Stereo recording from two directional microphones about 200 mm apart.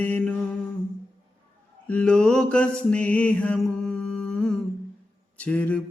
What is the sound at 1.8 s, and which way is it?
Mantra, 5° left (ahead or behind).